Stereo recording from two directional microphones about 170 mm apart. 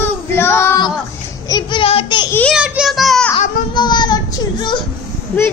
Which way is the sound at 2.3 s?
10° left (ahead or behind).